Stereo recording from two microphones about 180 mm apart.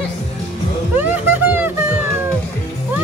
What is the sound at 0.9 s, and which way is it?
Music, 10° right (ahead or behind).